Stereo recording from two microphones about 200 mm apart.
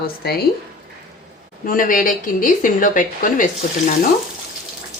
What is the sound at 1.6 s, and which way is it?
Speech, 45° left (ahead or behind).